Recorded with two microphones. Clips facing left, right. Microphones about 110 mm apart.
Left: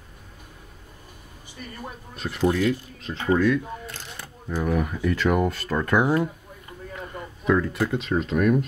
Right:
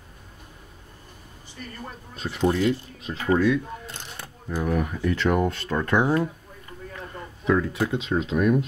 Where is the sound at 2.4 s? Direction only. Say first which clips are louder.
Even; 25° right (ahead or behind).